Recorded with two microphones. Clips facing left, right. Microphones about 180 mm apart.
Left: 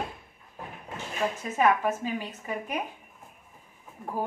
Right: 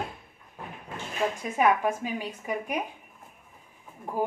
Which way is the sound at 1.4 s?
15° right (ahead or behind).